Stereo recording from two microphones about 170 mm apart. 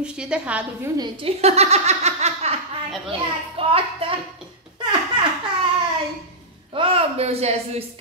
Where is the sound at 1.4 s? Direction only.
40° right (ahead or behind).